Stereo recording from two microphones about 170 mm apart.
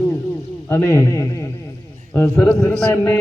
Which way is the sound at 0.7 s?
15° left (ahead or behind).